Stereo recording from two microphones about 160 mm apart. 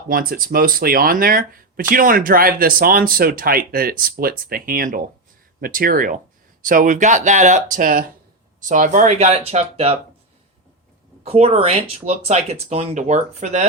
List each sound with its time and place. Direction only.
0.1 s speech: 65° right (ahead or behind); by 10.0 s 40° right (ahead or behind)
11.2 s speech: 40° right (ahead or behind)